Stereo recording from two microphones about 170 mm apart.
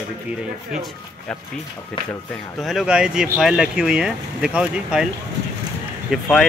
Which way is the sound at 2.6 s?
5° right (ahead or behind).